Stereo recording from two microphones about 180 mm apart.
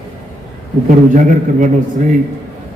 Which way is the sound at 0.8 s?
45° right (ahead or behind).